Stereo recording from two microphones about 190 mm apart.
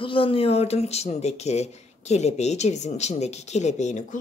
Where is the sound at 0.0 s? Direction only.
30° left (ahead or behind).